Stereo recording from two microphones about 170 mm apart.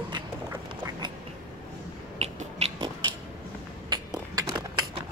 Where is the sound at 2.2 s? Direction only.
35° right (ahead or behind).